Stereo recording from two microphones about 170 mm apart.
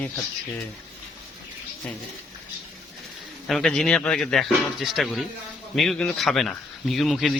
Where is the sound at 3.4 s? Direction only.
Centre (ahead or behind).